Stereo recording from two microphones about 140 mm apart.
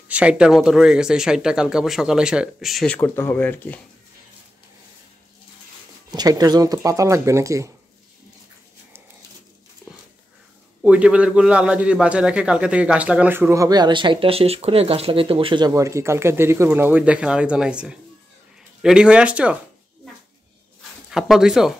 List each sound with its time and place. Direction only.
0.1 s speech: 10° right (ahead or behind)
3.0 s speech: 15° left (ahead or behind)
6.1 s speech: 30° right (ahead or behind)
10.8 s a man's voice: 10° right (ahead or behind); by 15.7 s 35° right (ahead or behind)
15.7 s a man's voice: 20° right (ahead or behind)
21.1 s speech: 5° right (ahead or behind)